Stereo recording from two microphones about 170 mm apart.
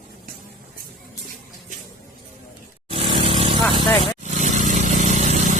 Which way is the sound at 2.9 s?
30° right (ahead or behind).